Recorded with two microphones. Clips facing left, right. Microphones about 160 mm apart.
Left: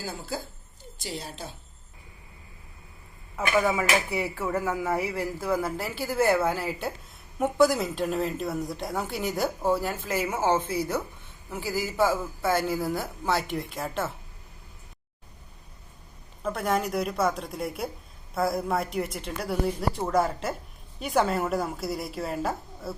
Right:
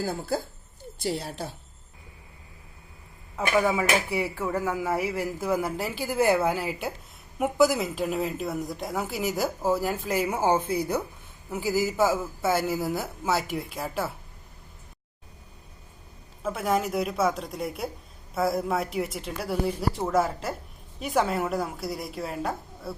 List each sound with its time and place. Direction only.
0.9 s a woman's voice: 55° right (ahead or behind)
3.3 s a man's voice: 15° right (ahead or behind)
4.4 s speech: 10° left (ahead or behind)
4.8 s a man's voice: 15° right (ahead or behind)
7.3 s a man's voice: centre (ahead or behind)
16.4 s speech: centre (ahead or behind)